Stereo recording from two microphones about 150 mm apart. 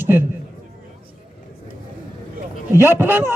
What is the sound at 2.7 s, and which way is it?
Speech, 15° right (ahead or behind).